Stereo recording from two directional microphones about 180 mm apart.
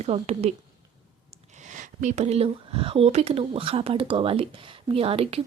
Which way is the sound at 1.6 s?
45° right (ahead or behind).